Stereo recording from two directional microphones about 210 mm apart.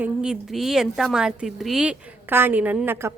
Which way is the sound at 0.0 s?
5° right (ahead or behind).